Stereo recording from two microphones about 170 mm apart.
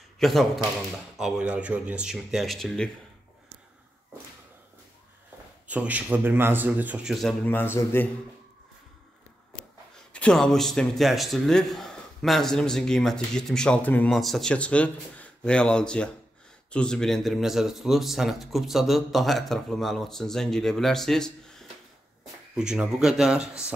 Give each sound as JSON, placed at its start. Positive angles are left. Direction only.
{"t": 0.2, "sound": "a man's voice", "side_deg": 0}
{"t": 5.7, "sound": "a man's voice", "side_deg": -10}
{"t": 7.2, "sound": "a man's voice", "side_deg": 5}
{"t": 10.1, "sound": "a man's voice", "side_deg": 5}